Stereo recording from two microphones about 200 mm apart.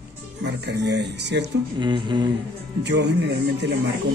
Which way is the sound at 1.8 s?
25° right (ahead or behind).